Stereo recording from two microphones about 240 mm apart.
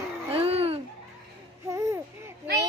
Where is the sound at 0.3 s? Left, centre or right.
Right.